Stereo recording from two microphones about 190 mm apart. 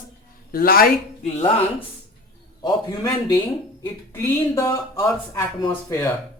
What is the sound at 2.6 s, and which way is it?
Speech, 20° left (ahead or behind).